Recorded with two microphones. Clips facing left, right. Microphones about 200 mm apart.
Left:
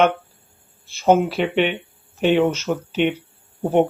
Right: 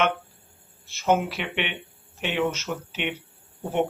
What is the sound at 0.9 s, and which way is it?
Speech, 30° left (ahead or behind).